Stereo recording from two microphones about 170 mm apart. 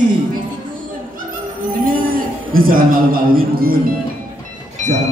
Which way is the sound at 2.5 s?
55° right (ahead or behind).